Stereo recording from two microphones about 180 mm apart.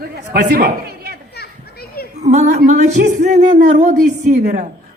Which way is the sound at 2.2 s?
40° right (ahead or behind).